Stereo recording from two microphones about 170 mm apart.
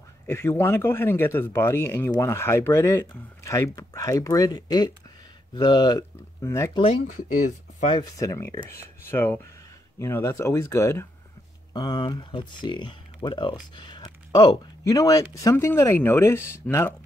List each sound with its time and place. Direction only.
0.3 s a man's voice: 15° left (ahead or behind)
6.7 s speech: 35° left (ahead or behind)
7.2 s speech: 50° left (ahead or behind)
7.9 s a man's voice: 20° left (ahead or behind)